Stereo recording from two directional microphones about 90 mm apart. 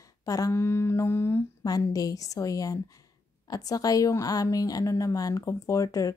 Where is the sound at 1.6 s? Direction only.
45° left (ahead or behind).